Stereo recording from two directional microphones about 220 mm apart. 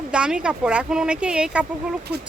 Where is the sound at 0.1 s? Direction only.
5° right (ahead or behind).